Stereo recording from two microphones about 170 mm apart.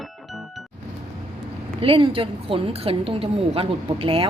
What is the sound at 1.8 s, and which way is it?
A woman's voice, 30° right (ahead or behind).